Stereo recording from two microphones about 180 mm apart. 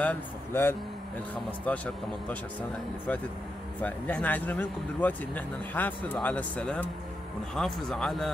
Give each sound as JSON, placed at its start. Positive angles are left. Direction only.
{"t": 0.0, "sound": "speech", "side_deg": 10}